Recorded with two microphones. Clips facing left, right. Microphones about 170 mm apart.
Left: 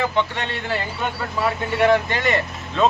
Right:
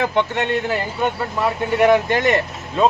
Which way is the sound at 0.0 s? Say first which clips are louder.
Right 3 dB; 55° right (ahead or behind).